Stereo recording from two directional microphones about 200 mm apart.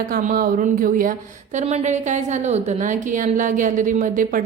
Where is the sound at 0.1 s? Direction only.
45° right (ahead or behind).